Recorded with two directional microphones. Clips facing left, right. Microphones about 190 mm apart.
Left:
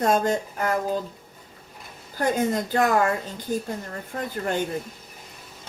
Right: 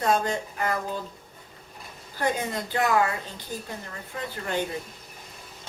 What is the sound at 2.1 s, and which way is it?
Speech, 45° left (ahead or behind).